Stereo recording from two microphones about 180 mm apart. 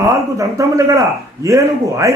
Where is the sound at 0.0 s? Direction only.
20° right (ahead or behind).